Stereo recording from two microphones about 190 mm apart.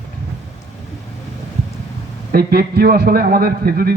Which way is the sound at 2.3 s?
50° right (ahead or behind).